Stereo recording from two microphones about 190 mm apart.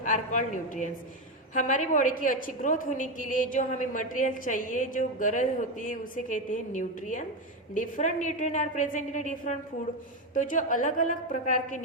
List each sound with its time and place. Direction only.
0.0 s a woman's voice: 40° left (ahead or behind)